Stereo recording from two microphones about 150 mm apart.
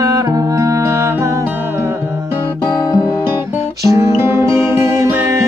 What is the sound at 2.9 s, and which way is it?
Guitar, 25° left (ahead or behind).